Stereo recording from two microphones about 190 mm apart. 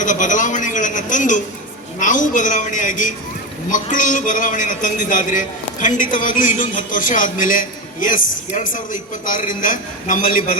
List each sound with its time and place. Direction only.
0.0 s a man's voice: 40° left (ahead or behind)